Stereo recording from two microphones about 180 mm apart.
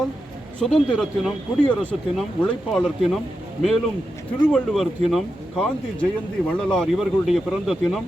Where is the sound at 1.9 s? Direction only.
Centre (ahead or behind).